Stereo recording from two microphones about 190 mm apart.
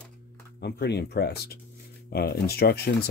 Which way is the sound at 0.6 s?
60° left (ahead or behind).